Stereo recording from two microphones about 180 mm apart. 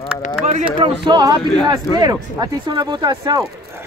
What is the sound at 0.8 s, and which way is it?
Speech, 25° right (ahead or behind).